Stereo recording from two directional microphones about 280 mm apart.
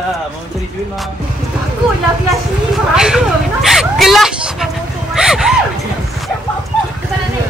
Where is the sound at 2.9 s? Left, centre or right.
Centre.